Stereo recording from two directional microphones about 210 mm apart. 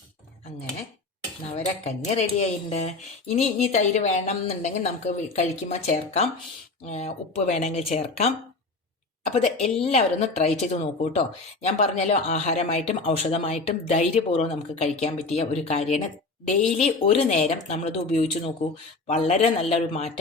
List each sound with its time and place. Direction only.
1.5 s speech: 30° left (ahead or behind)